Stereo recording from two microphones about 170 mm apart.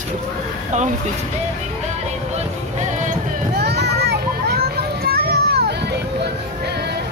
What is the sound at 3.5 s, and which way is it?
Children playing, 75° right (ahead or behind).